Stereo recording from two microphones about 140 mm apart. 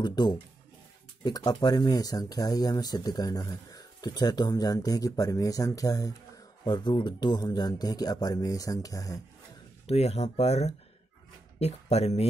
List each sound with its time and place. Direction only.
0.0 s speech: 30° left (ahead or behind)
9.8 s speech: 50° left (ahead or behind)